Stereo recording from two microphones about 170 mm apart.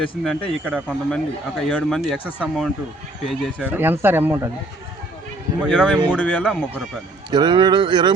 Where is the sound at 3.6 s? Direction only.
10° right (ahead or behind).